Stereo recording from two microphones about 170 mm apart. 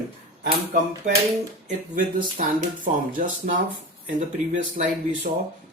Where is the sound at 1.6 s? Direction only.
50° right (ahead or behind).